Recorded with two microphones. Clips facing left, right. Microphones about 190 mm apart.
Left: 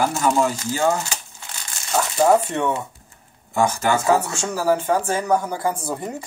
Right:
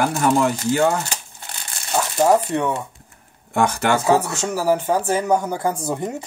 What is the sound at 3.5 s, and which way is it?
Speech, 65° right (ahead or behind).